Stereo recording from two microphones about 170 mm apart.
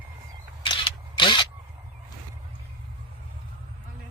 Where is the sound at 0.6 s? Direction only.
30° left (ahead or behind).